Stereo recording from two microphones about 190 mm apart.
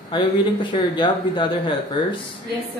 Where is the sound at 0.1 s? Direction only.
25° left (ahead or behind).